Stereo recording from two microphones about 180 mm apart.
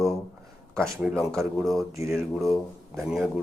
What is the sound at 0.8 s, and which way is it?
Speech, 5° left (ahead or behind).